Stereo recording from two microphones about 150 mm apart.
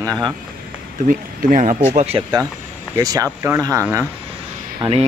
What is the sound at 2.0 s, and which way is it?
Speech, 45° right (ahead or behind).